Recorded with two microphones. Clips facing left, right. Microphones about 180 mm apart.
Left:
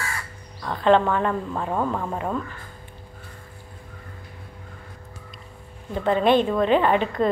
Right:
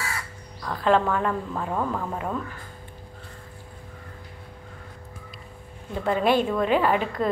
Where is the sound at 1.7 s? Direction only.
15° left (ahead or behind).